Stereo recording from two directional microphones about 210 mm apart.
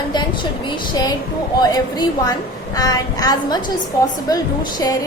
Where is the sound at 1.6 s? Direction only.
20° left (ahead or behind).